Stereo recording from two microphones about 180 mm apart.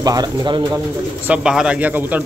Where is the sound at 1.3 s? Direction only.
5° right (ahead or behind).